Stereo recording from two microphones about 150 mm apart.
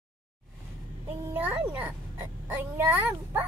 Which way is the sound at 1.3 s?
15° right (ahead or behind).